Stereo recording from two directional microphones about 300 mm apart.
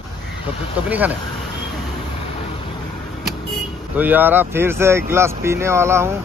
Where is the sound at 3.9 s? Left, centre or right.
Centre.